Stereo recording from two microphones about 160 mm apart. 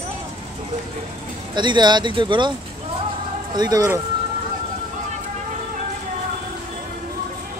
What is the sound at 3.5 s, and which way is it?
Speech, 25° right (ahead or behind).